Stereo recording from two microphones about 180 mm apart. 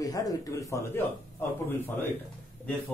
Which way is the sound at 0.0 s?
20° left (ahead or behind).